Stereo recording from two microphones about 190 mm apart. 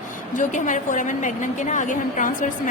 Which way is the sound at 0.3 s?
40° left (ahead or behind).